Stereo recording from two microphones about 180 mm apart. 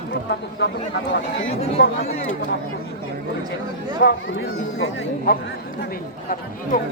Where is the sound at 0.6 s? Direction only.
75° left (ahead or behind).